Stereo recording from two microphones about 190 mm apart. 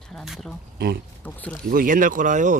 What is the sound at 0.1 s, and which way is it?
Speech, centre (ahead or behind).